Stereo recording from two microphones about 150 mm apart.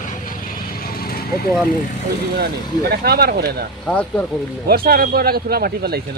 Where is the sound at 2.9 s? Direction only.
90° right.